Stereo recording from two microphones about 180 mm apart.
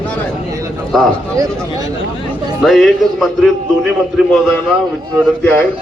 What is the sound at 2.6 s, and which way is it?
A man's voice, centre (ahead or behind).